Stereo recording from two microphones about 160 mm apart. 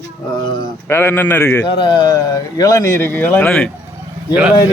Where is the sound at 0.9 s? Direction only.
15° left (ahead or behind).